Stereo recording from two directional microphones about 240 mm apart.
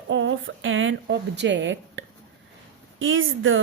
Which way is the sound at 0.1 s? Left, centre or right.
Right.